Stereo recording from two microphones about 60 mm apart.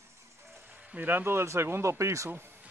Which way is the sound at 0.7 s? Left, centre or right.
Right.